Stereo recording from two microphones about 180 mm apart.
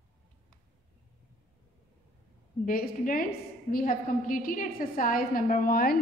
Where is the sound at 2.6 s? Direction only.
50° left (ahead or behind).